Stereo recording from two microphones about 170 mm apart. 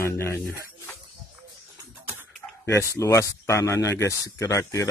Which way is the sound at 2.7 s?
15° left (ahead or behind).